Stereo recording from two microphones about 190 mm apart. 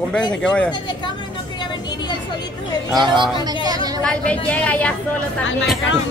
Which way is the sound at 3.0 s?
25° right (ahead or behind).